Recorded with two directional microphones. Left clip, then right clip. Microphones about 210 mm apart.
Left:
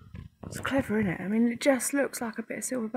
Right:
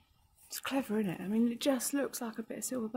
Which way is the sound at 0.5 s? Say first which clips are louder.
Left 6 dB; 25° left (ahead or behind).